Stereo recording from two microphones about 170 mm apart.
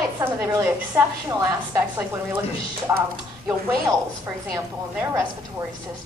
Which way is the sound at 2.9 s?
20° right (ahead or behind).